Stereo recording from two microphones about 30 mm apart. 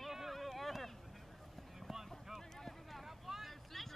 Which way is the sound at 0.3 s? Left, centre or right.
Centre.